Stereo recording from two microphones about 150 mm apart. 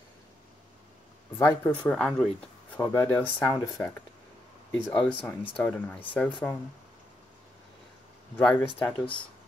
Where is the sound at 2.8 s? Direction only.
20° left (ahead or behind).